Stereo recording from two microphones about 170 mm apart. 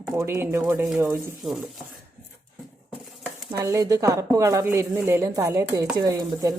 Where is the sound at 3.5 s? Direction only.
20° right (ahead or behind).